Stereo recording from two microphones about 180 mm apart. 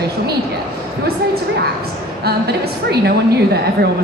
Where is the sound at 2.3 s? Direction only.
60° right (ahead or behind).